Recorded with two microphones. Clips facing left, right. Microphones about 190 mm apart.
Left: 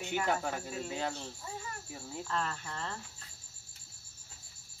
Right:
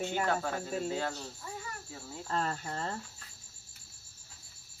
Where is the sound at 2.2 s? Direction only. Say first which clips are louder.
Right 4 dB; 40° right (ahead or behind).